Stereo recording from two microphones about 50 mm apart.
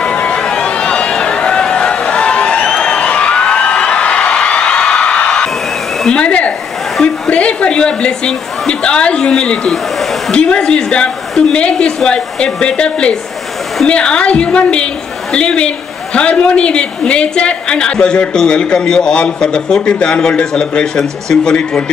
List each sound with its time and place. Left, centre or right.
0.0 s run: left
2.7 s a sound: centre
7.2 s a woman's voice: left